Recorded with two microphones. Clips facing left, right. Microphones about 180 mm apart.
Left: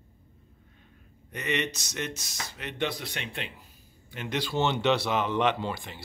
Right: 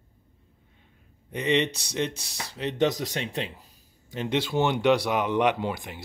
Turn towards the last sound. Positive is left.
turn(degrees=-15)  # may be behind; listen again after turning